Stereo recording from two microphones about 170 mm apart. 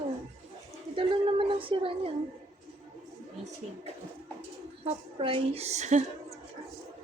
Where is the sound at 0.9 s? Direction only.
30° right (ahead or behind).